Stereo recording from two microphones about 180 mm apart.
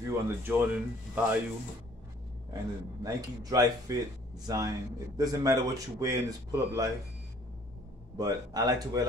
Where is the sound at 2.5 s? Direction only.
20° right (ahead or behind).